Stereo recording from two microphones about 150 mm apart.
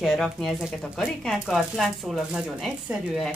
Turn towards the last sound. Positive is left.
turn(degrees=0)  # may be behind; listen again after turning